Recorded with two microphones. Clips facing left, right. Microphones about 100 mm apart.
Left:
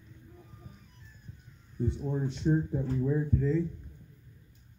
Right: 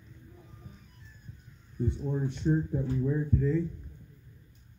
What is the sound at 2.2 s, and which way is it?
Speech, 15° left (ahead or behind).